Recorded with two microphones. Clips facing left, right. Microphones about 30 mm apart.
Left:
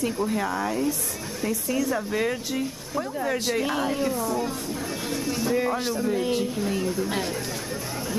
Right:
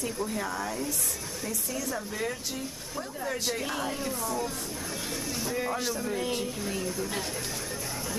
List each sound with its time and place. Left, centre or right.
0.0 s speech: left
2.1 s speech: left; by 4.5 s centre
5.1 s a sound: centre
5.9 s speech: centre